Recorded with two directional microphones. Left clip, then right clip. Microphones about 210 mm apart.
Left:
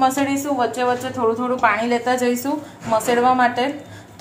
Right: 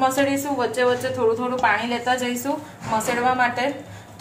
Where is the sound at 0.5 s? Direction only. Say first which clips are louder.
Left 2 dB; 10° left (ahead or behind).